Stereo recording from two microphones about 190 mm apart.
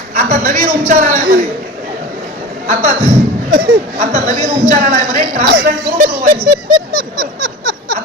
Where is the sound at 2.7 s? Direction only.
40° right (ahead or behind).